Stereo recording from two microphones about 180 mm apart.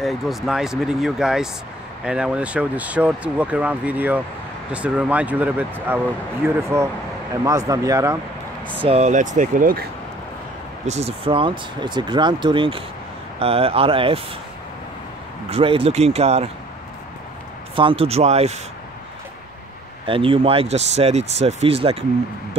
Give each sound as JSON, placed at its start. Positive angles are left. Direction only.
{"t": 0.0, "sound": "speech", "side_deg": 0}
{"t": 8.7, "sound": "speech", "side_deg": -35}
{"t": 10.9, "sound": "speech", "side_deg": -35}
{"t": 15.5, "sound": "speech", "side_deg": -30}
{"t": 17.7, "sound": "speech", "side_deg": -30}
{"t": 20.1, "sound": "speech", "side_deg": -30}